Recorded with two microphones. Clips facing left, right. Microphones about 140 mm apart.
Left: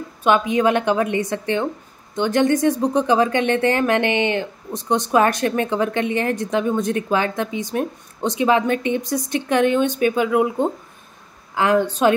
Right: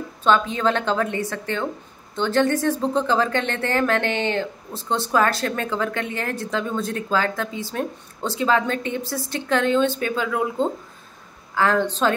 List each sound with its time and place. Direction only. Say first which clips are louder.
0.2 s speech: left 3 dB; 15° left (ahead or behind)